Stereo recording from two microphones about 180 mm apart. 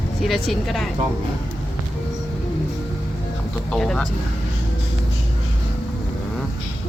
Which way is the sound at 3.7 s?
5° left (ahead or behind).